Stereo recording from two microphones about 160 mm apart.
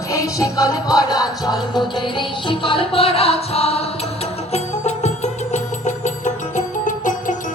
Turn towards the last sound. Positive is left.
turn(degrees=50)  # may be behind; listen again after turning